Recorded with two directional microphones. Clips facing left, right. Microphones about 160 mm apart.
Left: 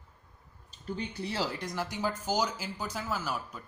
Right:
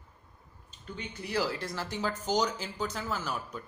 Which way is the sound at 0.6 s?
35° left (ahead or behind).